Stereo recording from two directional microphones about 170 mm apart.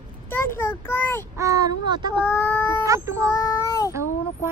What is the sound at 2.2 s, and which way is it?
Speech, 15° left (ahead or behind).